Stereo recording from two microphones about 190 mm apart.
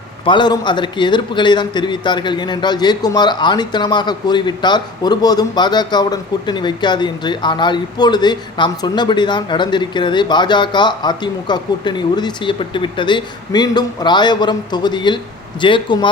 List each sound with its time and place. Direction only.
0.3 s a man's voice: 25° left (ahead or behind)